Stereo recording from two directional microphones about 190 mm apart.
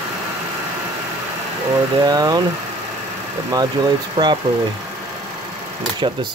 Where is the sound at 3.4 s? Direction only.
20° right (ahead or behind).